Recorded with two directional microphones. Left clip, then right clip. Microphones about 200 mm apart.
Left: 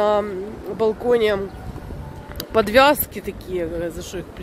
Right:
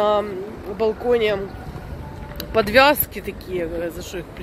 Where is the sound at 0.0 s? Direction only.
20° left (ahead or behind).